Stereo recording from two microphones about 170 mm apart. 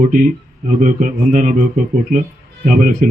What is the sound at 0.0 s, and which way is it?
A man's voice, 50° right (ahead or behind).